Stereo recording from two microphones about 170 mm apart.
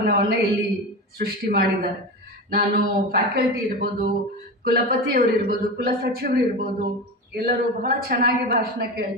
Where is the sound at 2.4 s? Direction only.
60° right (ahead or behind).